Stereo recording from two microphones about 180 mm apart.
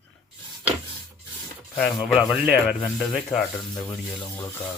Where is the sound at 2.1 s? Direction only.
5° right (ahead or behind).